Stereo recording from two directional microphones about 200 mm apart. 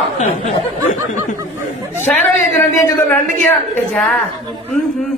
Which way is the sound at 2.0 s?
10° left (ahead or behind).